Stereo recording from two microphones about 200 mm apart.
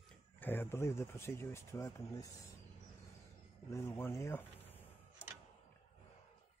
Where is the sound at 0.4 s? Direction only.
10° left (ahead or behind).